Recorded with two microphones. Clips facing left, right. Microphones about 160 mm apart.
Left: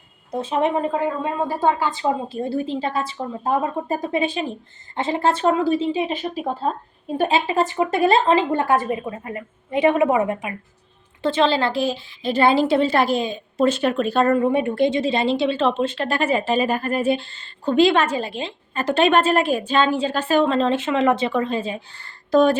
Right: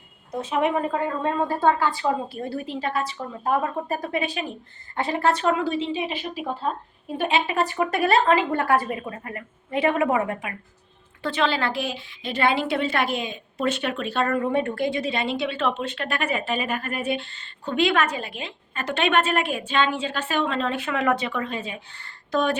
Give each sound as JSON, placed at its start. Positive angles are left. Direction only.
{"t": 0.3, "sound": "a woman's voice", "side_deg": 30}
{"t": 0.9, "sound": "a woman's voice", "side_deg": 10}
{"t": 14.3, "sound": "a woman's voice", "side_deg": 15}